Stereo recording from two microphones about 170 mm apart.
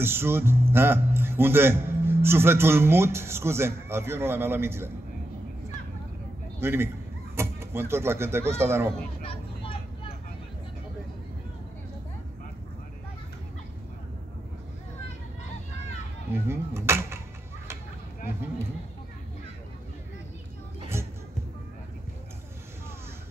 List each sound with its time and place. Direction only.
0.0 s speech: 15° right (ahead or behind)
6.6 s speech: 15° right (ahead or behind)
9.2 s vehicle: 35° left (ahead or behind)
16.4 s speech: 15° right (ahead or behind)
20.9 s music: 15° right (ahead or behind)